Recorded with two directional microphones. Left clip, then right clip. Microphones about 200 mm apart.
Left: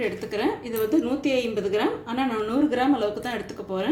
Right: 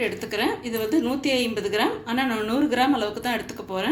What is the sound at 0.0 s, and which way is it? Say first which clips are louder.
A woman's voice: right 1 dB; 5° right (ahead or behind).